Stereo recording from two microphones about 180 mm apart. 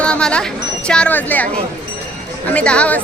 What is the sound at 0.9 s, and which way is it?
Speech, 5° left (ahead or behind).